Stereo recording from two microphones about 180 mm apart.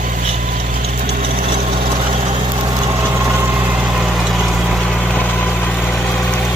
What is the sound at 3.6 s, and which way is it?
Vehicle, 5° right (ahead or behind).